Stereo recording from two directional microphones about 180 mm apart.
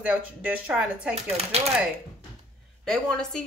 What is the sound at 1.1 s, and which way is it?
Speech, 35° right (ahead or behind).